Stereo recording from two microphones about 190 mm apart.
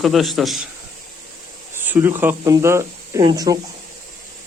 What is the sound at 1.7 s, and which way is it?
Speech, 10° right (ahead or behind).